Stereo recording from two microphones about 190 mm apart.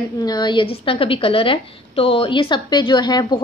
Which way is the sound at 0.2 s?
20° left (ahead or behind).